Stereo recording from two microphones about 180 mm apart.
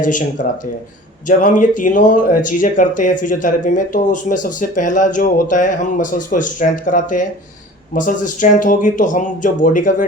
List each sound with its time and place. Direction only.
0.0 s speech: 45° left (ahead or behind)